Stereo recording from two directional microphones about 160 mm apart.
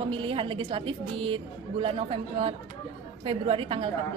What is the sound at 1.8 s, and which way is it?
A woman's voice, 30° right (ahead or behind).